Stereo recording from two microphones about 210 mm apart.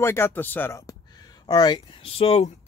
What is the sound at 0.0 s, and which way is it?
Speech, 10° left (ahead or behind).